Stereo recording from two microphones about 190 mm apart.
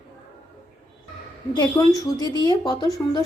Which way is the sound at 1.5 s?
20° left (ahead or behind).